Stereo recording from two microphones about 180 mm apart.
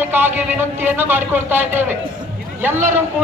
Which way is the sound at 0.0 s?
10° right (ahead or behind).